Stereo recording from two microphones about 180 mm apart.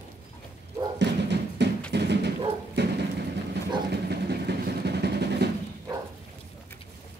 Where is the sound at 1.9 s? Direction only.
70° right (ahead or behind).